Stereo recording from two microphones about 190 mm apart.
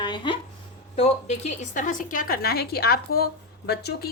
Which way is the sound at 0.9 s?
35° left (ahead or behind).